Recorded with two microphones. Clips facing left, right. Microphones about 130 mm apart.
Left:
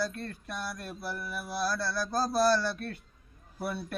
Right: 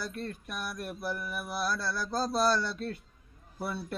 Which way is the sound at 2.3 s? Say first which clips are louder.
Left 2 dB; 20° right (ahead or behind).